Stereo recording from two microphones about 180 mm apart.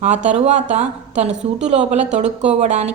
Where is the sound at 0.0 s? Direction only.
40° right (ahead or behind).